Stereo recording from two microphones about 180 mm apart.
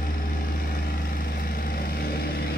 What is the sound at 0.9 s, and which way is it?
Vehicle, 55° left (ahead or behind).